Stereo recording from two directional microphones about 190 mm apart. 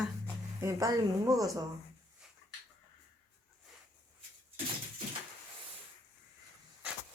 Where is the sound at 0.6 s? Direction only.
15° right (ahead or behind).